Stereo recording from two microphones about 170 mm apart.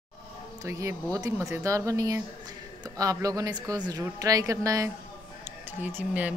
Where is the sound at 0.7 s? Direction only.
20° right (ahead or behind).